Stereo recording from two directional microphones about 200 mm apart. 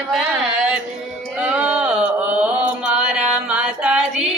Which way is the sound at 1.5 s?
5° right (ahead or behind).